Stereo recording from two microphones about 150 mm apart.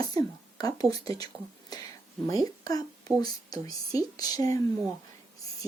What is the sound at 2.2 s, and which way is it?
Speech, 25° left (ahead or behind).